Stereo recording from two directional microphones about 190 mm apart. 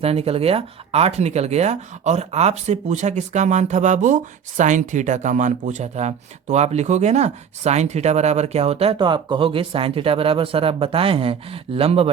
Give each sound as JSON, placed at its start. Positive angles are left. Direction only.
{"t": 0.0, "sound": "speech", "side_deg": -30}